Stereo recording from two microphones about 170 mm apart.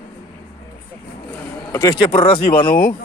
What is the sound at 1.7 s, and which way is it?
Speech, 20° left (ahead or behind).